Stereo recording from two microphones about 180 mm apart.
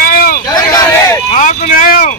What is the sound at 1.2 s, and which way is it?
Vehicle, 45° left (ahead or behind).